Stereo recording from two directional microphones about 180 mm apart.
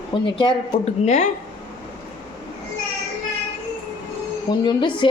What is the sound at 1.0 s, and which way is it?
Speech, 40° left (ahead or behind).